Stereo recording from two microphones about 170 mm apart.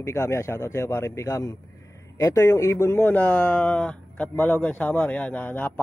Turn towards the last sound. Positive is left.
turn(degrees=10)  # may be behind; listen again after turning